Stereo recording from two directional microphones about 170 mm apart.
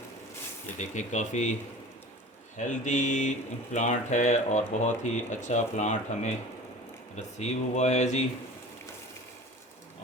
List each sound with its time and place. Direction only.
0.8 s speech: 45° left (ahead or behind)
2.6 s speech: 45° left (ahead or behind)
7.3 s speech: 45° left (ahead or behind)